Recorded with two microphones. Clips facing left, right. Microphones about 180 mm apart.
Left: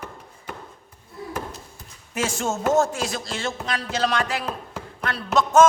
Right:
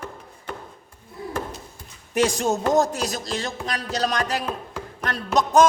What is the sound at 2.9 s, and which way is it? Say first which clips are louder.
Speech: right 1 dB; 40° right (ahead or behind).